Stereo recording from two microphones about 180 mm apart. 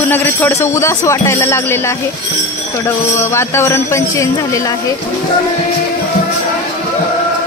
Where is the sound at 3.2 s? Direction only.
15° left (ahead or behind).